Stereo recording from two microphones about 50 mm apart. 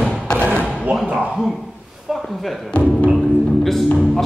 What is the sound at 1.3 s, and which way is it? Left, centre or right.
A man's voice, centre.